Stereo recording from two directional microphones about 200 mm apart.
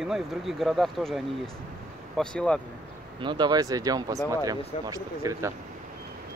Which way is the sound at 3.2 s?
20° right (ahead or behind).